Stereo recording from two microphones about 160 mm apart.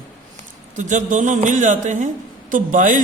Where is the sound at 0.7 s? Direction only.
50° right (ahead or behind).